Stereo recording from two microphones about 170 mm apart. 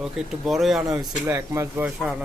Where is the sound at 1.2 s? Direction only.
15° right (ahead or behind).